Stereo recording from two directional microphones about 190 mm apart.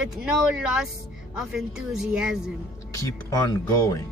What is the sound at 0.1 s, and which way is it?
Speech, 5° right (ahead or behind).